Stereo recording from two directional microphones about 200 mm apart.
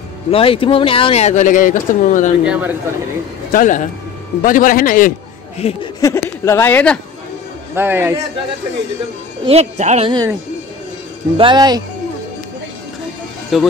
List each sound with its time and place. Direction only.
0.3 s speech: 25° left (ahead or behind)
2.4 s speech: 5° right (ahead or behind)
3.5 s a man's voice: 40° left (ahead or behind)
5.6 s speech: 30° left (ahead or behind)
5.9 s speech: 15° left (ahead or behind)
7.7 s a man's voice: 10° right (ahead or behind)
9.5 s speech: 35° right (ahead or behind)
11.3 s speech: 20° right (ahead or behind)
13.5 s speech: centre (ahead or behind)